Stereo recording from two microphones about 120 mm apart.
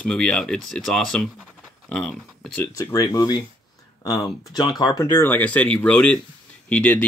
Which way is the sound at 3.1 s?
30° left (ahead or behind).